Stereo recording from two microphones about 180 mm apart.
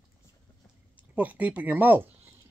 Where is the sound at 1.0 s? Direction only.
10° right (ahead or behind).